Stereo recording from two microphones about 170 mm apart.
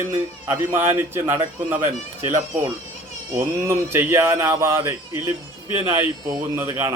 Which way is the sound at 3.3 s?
15° right (ahead or behind).